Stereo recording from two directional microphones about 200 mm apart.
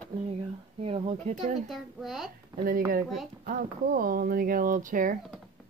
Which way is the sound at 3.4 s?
45° right (ahead or behind).